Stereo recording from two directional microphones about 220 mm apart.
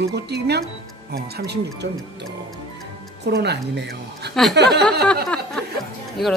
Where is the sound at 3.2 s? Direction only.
50° right (ahead or behind).